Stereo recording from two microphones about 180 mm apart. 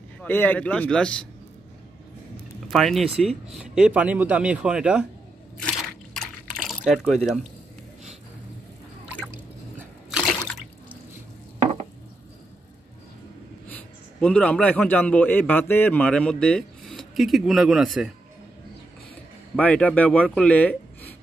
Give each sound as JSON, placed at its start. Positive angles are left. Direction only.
{"t": 0.2, "sound": "a man's voice", "side_deg": 10}
{"t": 2.7, "sound": "a man's voice", "side_deg": 0}
{"t": 5.6, "sound": "a sound", "side_deg": 5}
{"t": 6.7, "sound": "speech", "side_deg": 0}
{"t": 9.8, "sound": "a sound", "side_deg": -5}
{"t": 14.2, "sound": "a man's voice", "side_deg": 5}
{"t": 19.5, "sound": "a man's voice", "side_deg": 5}